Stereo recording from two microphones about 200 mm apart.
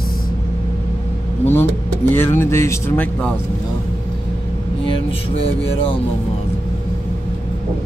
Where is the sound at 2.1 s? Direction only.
10° left (ahead or behind).